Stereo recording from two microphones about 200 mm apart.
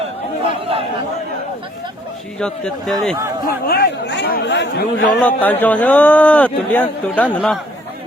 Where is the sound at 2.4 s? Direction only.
5° left (ahead or behind).